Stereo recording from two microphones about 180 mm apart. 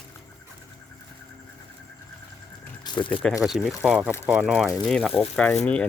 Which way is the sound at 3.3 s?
5° right (ahead or behind).